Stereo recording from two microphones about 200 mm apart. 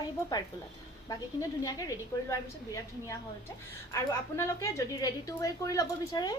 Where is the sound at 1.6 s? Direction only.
15° left (ahead or behind).